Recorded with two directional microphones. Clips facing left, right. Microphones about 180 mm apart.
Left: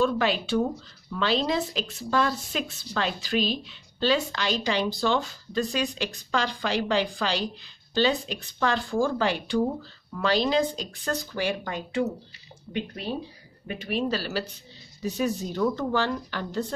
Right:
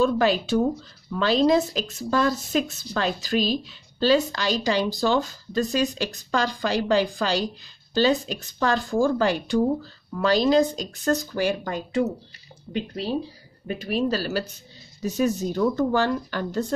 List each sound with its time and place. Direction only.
0.0 s speech: 40° right (ahead or behind)